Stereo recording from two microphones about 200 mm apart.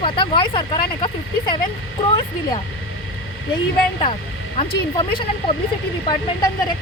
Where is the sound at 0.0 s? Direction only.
25° left (ahead or behind).